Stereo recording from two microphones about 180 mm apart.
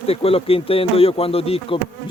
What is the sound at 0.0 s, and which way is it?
Speech, 35° left (ahead or behind).